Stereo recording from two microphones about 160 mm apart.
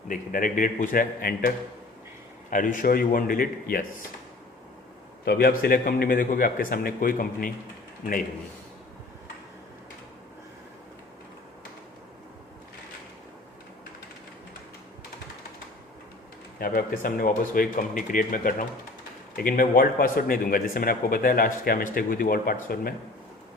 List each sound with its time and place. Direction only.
0.1 s speech: 60° left (ahead or behind)
2.5 s speech: 55° left (ahead or behind)
5.2 s speech: 70° left (ahead or behind)
16.6 s speech: 65° left (ahead or behind)